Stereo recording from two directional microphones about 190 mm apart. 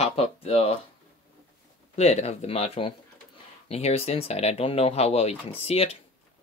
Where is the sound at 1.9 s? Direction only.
35° left (ahead or behind).